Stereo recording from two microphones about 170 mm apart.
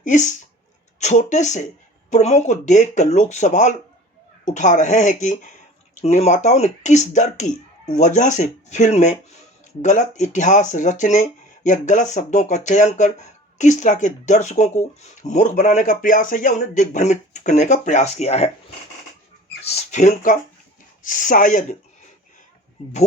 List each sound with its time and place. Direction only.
0.0 s speech: 45° left (ahead or behind)
19.6 s speech: 40° left (ahead or behind)